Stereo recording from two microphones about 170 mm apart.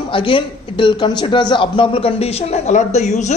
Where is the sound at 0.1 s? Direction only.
30° left (ahead or behind).